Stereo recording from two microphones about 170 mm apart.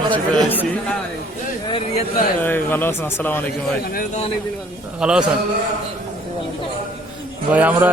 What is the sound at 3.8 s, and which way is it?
Speech, 60° left (ahead or behind).